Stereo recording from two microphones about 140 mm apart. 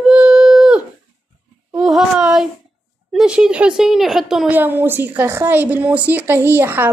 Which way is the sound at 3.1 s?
5° right (ahead or behind).